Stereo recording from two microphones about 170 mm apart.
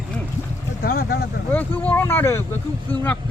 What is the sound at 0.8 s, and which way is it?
Speech, 60° left (ahead or behind).